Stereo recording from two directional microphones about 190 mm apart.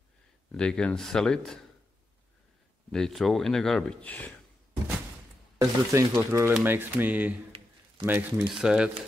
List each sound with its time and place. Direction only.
0.5 s speech: 5° left (ahead or behind)
2.9 s speech: centre (ahead or behind)
5.6 s speech: 15° right (ahead or behind)